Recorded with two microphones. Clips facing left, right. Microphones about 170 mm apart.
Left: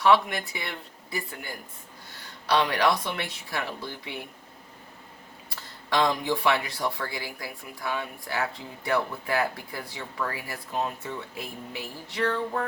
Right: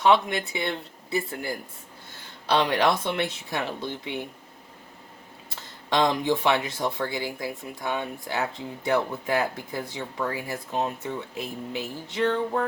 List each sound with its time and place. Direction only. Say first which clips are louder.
0.0 s speech: right 1 dB; 20° right (ahead or behind)
5.5 s speech: right 2 dB; 20° right (ahead or behind)